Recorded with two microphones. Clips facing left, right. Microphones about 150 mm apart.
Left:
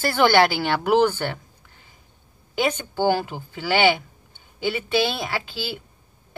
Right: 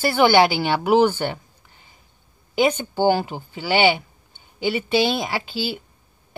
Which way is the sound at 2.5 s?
15° right (ahead or behind).